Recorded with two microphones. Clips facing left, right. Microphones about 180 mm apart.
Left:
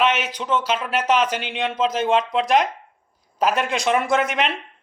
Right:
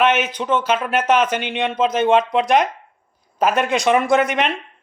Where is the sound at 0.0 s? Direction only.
55° right (ahead or behind).